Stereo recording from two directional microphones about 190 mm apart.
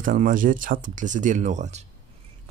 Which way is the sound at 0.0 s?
45° right (ahead or behind).